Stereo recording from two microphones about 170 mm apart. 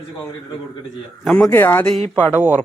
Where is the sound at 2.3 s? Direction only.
10° right (ahead or behind).